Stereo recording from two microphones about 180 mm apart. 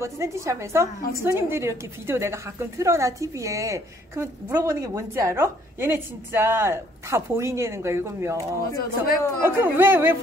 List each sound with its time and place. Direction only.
0.0 s a woman's voice: 15° right (ahead or behind)
8.7 s speech: 55° left (ahead or behind)
9.4 s a woman's voice: 15° right (ahead or behind)